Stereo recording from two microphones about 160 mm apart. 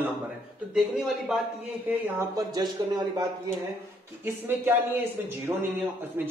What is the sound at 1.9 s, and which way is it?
Speech, 20° right (ahead or behind).